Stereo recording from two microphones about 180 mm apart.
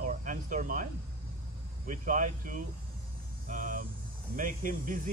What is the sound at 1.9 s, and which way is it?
Speech, 45° right (ahead or behind).